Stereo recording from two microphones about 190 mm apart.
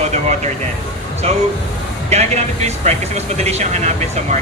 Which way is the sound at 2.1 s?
35° right (ahead or behind).